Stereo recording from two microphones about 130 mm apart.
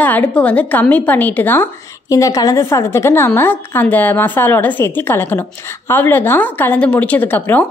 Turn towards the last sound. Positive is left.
turn(degrees=15)  # may be behind; listen again after turning